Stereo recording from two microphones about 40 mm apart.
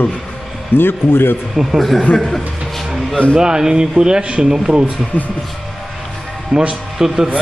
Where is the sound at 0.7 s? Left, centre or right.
Left.